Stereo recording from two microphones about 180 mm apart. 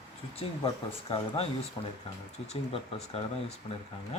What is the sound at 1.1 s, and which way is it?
A man's voice, 25° left (ahead or behind).